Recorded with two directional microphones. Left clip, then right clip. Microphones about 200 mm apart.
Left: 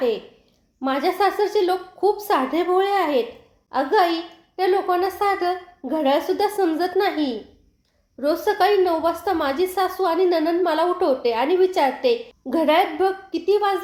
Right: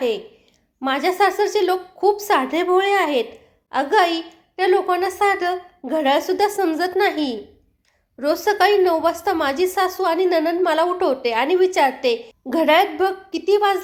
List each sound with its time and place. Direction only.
0.8 s a woman's voice: 20° right (ahead or behind)